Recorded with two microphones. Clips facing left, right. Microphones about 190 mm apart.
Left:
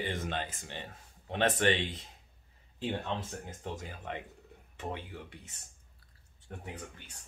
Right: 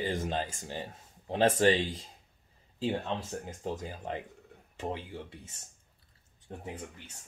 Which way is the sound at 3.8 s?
35° right (ahead or behind).